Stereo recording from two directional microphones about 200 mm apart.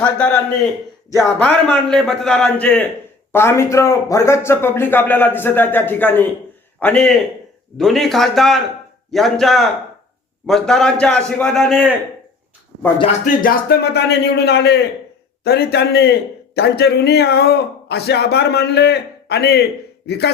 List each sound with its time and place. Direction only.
1.2 s a man's voice: 5° left (ahead or behind)
13.2 s a man's voice: 50° left (ahead or behind)